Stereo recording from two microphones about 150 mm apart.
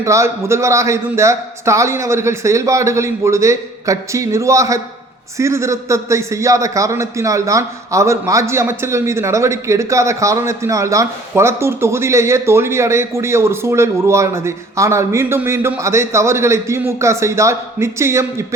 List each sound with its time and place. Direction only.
0.0 s a man's voice: 20° right (ahead or behind)